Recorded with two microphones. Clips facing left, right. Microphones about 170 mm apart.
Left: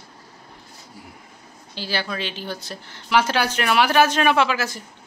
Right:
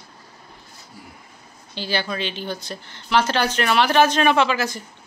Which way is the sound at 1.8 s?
5° left (ahead or behind).